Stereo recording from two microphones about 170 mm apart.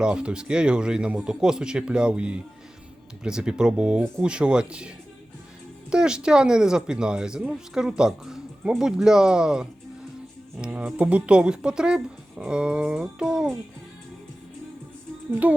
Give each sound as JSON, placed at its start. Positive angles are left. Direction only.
{"t": 0.0, "sound": "speech", "side_deg": -5}
{"t": 5.9, "sound": "speech", "side_deg": -5}
{"t": 15.4, "sound": "speech", "side_deg": -10}